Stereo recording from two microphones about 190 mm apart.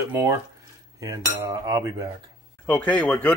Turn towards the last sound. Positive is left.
turn(degrees=5)  # may be behind; listen again after turning